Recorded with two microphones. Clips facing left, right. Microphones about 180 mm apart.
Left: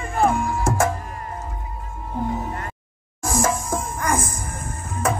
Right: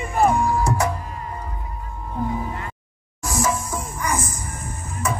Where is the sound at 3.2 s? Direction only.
50° left (ahead or behind).